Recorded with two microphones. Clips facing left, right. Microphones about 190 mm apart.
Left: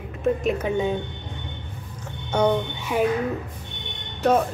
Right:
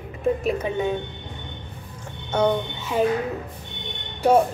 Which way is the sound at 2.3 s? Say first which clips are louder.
Even; 10° left (ahead or behind).